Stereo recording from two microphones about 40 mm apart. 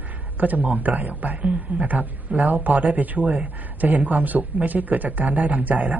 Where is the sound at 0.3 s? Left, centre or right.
Right.